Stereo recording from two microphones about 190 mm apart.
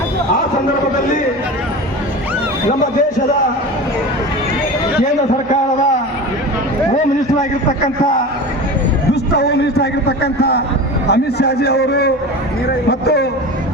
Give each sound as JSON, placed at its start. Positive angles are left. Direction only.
{"t": 9.3, "sound": "a man's voice", "side_deg": 60}